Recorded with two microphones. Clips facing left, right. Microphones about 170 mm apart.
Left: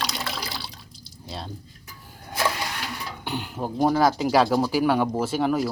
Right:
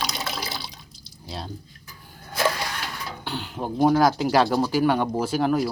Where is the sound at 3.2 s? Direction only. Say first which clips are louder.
Left 2 dB; 15° left (ahead or behind).